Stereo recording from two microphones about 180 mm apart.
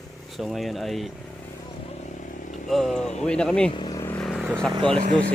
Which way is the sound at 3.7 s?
25° left (ahead or behind).